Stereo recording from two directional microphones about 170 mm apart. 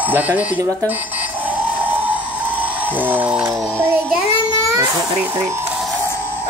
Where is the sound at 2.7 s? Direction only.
10° right (ahead or behind).